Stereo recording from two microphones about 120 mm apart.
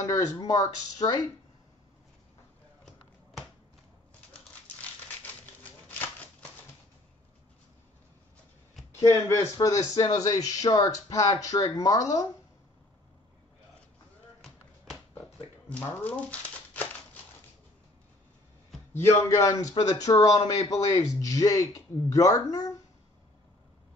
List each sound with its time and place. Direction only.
0.0 s speech: 30° left (ahead or behind)
5.2 s a sound: 15° left (ahead or behind)
9.0 s speech: 25° left (ahead or behind)
15.7 s speech: 15° left (ahead or behind)
18.9 s speech: 25° left (ahead or behind)